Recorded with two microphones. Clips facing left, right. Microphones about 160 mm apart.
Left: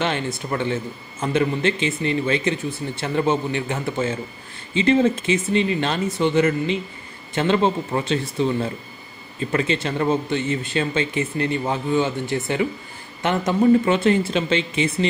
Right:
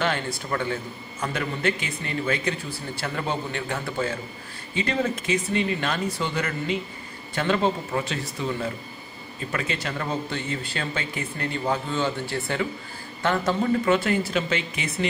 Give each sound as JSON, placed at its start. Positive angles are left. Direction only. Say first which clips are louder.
{"t": 0.0, "sound": "speech", "louder": "left 3 dB", "side_deg": 20}
{"t": 9.5, "sound": "speech", "louder": "left 7 dB", "side_deg": 25}